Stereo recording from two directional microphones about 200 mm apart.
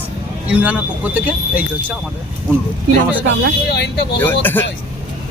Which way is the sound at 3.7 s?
55° left (ahead or behind).